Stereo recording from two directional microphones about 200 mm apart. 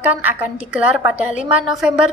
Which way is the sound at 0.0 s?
10° right (ahead or behind).